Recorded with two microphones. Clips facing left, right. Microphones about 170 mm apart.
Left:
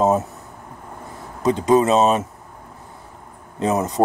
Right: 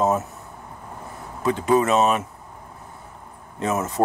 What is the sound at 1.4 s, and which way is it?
Speech, 20° left (ahead or behind).